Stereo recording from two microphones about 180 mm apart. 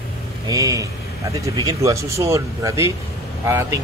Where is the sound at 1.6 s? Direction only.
20° right (ahead or behind).